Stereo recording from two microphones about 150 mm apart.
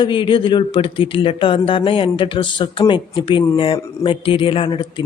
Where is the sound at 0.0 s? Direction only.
30° left (ahead or behind).